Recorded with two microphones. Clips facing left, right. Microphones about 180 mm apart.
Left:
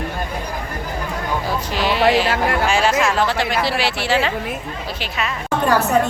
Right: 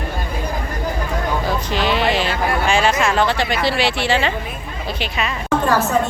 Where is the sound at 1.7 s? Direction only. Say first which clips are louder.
Left 3 dB; 5° left (ahead or behind).